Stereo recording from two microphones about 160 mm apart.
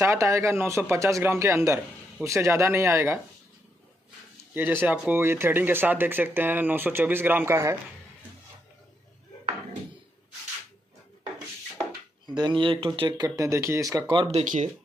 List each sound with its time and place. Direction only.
0.0 s speech: 20° right (ahead or behind)
4.6 s speech: 10° right (ahead or behind)
12.4 s speech: 30° right (ahead or behind)
13.4 s speech: 20° right (ahead or behind)